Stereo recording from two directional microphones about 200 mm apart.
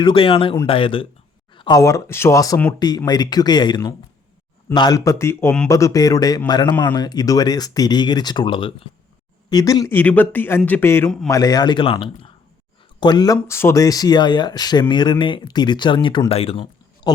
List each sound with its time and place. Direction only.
0.0 s a man's voice: 25° left (ahead or behind)